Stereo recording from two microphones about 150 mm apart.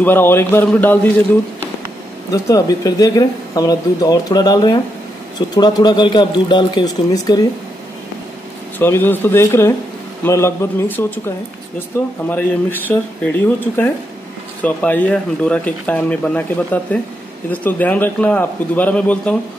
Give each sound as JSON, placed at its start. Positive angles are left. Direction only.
{"t": 0.0, "sound": "speech", "side_deg": 15}
{"t": 2.3, "sound": "speech", "side_deg": 25}
{"t": 8.7, "sound": "speech", "side_deg": 15}
{"t": 14.6, "sound": "speech", "side_deg": 10}